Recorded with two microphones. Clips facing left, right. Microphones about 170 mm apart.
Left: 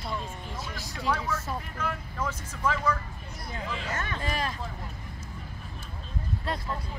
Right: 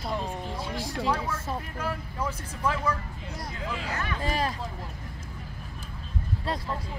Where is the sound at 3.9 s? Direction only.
30° right (ahead or behind).